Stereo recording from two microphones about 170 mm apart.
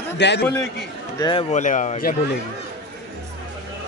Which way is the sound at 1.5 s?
45° left (ahead or behind).